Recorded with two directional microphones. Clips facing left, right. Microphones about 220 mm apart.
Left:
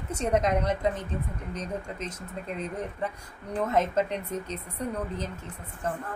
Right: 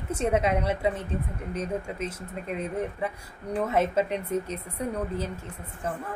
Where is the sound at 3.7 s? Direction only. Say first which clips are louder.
Right 1 dB; 10° right (ahead or behind).